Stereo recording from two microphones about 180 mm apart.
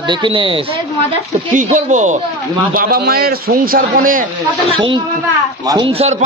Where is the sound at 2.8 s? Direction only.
55° right (ahead or behind).